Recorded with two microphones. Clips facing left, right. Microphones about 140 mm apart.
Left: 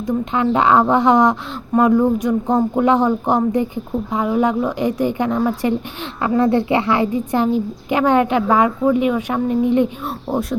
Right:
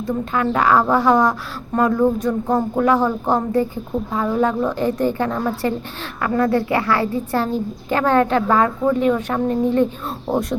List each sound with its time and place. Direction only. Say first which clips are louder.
0.0 s a woman's voice: left 2 dB; 20° left (ahead or behind)